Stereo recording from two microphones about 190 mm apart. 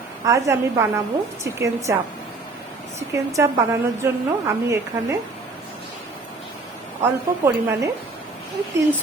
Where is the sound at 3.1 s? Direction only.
15° right (ahead or behind).